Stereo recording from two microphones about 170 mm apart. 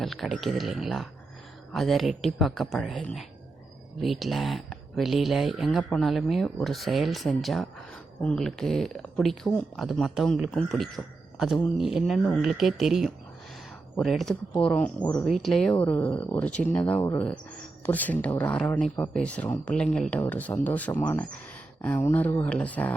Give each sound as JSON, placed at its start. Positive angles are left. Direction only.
{"t": 0.0, "sound": "speech", "side_deg": 0}